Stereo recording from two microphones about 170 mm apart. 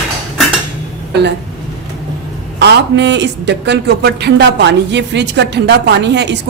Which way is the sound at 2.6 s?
85° right.